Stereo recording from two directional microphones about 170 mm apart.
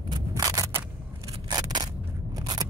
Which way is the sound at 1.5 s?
25° right (ahead or behind).